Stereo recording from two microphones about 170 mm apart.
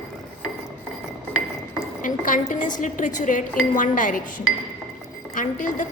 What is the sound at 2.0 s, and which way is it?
Dishes, 50° left (ahead or behind).